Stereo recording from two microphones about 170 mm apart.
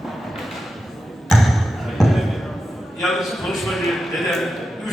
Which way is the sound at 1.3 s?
Centre (ahead or behind).